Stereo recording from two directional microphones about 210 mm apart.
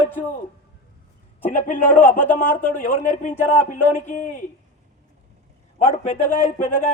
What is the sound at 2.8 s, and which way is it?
Speech, 40° left (ahead or behind).